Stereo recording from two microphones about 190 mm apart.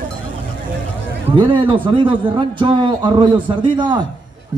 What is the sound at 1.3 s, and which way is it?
A man's voice, 25° right (ahead or behind).